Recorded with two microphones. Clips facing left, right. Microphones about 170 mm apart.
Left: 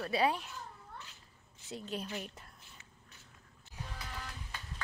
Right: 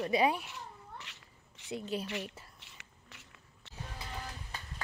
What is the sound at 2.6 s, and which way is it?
Whispering, 85° right.